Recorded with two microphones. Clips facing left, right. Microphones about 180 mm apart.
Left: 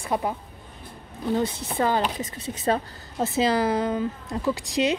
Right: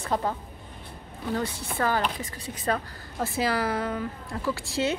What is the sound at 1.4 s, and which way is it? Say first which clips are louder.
A woman's voice: left 4 dB; 20° left (ahead or behind).